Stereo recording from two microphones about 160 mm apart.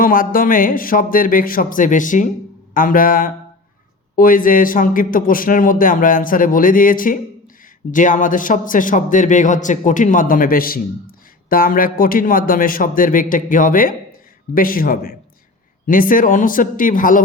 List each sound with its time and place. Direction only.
0.0 s a man's voice: 60° left (ahead or behind)